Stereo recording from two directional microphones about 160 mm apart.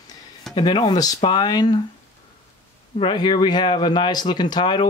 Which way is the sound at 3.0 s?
30° left (ahead or behind).